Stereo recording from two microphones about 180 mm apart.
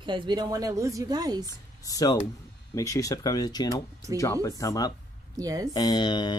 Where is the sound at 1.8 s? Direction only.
20° left (ahead or behind).